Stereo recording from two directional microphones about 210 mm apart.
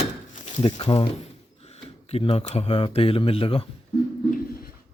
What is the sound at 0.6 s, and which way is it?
Speech, 25° left (ahead or behind).